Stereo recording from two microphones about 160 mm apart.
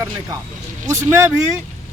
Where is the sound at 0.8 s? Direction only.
15° right (ahead or behind).